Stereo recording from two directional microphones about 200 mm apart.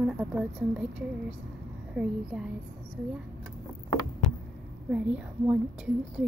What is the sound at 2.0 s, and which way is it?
Speech, 5° right (ahead or behind).